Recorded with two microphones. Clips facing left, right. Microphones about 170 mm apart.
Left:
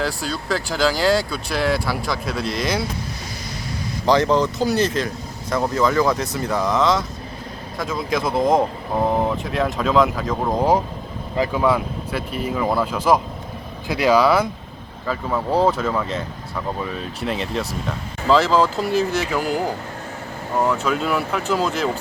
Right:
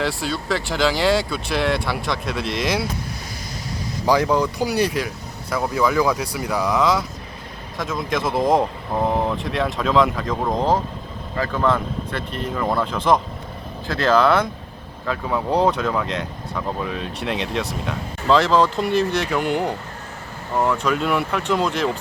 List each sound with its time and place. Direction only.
0.0 s speech: centre (ahead or behind)
4.0 s speech: 10° right (ahead or behind)